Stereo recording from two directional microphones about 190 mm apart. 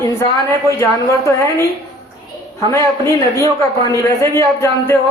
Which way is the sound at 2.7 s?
15° left (ahead or behind).